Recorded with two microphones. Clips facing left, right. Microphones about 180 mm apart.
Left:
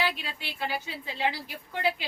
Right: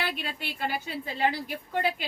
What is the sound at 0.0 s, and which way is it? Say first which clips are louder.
A woman's voice: left 1 dB; 50° right (ahead or behind).